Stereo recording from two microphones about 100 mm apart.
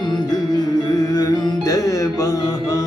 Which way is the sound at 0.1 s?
40° left (ahead or behind).